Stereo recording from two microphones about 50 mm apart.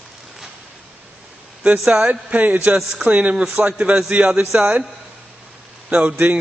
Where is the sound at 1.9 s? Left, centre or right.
Centre.